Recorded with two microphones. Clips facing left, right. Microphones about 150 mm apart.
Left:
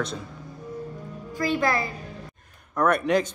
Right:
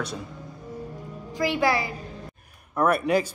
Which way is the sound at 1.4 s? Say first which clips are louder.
Right 1 dB; 15° right (ahead or behind).